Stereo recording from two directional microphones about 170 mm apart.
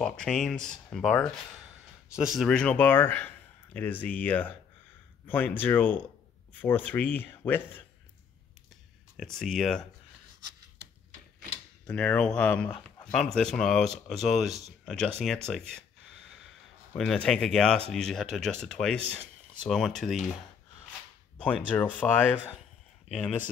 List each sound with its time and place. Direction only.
0.0 s speech: 5° left (ahead or behind)
9.1 s speech: centre (ahead or behind)
11.8 s speech: 5° left (ahead or behind)
21.4 s speech: 5° left (ahead or behind)